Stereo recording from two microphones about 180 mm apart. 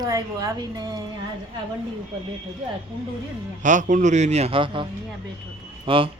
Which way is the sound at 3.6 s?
45° right (ahead or behind).